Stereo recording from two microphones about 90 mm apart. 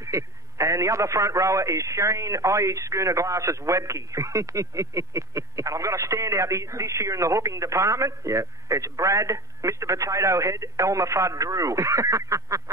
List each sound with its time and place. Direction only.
0.0 s a man's voice: 35° right (ahead or behind)